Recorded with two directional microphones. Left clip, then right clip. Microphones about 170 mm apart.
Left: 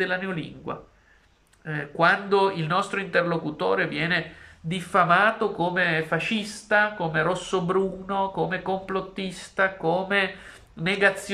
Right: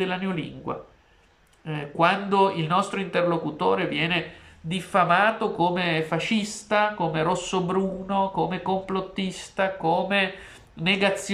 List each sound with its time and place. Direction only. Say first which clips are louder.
0.0 s speech: left 1 dB; 10° right (ahead or behind)